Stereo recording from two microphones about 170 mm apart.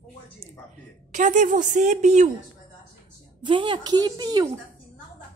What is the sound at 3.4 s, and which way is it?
A woman's voice, 30° right (ahead or behind).